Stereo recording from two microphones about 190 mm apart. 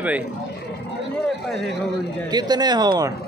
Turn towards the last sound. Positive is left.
turn(degrees=-20)  # may be behind; listen again after turning